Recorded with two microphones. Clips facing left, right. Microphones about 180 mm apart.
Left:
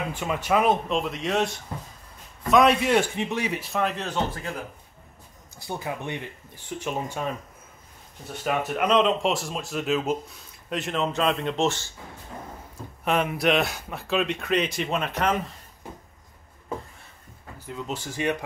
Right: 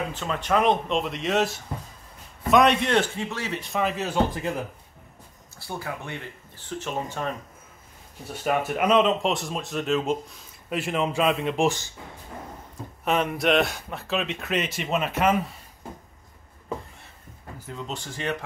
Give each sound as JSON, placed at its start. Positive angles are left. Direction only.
{"t": 0.1, "sound": "speech", "side_deg": 10}
{"t": 3.2, "sound": "speech", "side_deg": 15}
{"t": 3.6, "sound": "speech", "side_deg": 0}
{"t": 4.3, "sound": "speech", "side_deg": -20}
{"t": 5.6, "sound": "speech", "side_deg": 20}
{"t": 8.5, "sound": "speech", "side_deg": -5}
{"t": 13.0, "sound": "speech", "side_deg": 0}
{"t": 17.6, "sound": "speech", "side_deg": 10}